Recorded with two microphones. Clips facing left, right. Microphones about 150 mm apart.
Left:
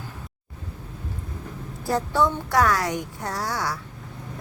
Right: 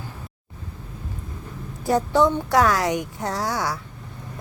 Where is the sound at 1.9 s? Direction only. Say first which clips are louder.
Right 4 dB; 20° right (ahead or behind).